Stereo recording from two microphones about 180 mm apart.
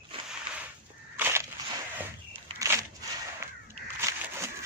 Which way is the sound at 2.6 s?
20° right (ahead or behind).